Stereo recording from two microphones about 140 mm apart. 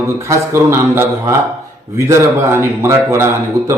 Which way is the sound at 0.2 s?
20° right (ahead or behind).